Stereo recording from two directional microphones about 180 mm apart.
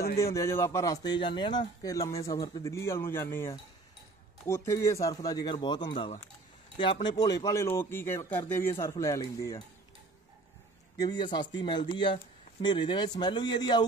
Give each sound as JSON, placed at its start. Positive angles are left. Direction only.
{"t": 0.2, "sound": "speech", "side_deg": 15}
{"t": 11.0, "sound": "speech", "side_deg": 25}